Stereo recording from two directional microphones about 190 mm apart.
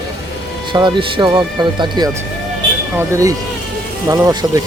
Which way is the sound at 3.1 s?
15° right (ahead or behind).